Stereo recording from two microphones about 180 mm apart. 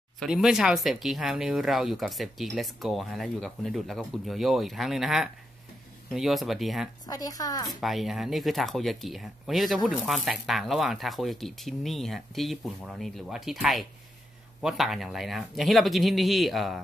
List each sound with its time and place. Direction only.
0.2 s speech: centre (ahead or behind)
7.1 s speech: 20° left (ahead or behind)
7.8 s speech: centre (ahead or behind)